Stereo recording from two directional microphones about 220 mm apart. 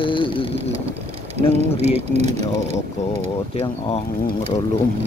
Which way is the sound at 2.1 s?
30° right (ahead or behind).